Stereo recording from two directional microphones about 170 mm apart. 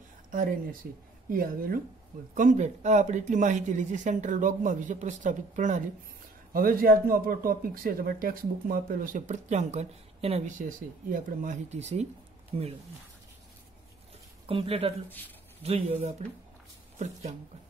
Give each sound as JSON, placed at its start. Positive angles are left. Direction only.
{"t": 0.3, "sound": "speech", "side_deg": -55}
{"t": 2.3, "sound": "speech", "side_deg": -45}
{"t": 6.5, "sound": "speech", "side_deg": -60}
{"t": 14.4, "sound": "speech", "side_deg": -35}